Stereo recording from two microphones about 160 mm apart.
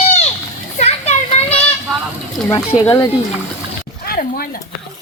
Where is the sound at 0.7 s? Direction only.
45° left (ahead or behind).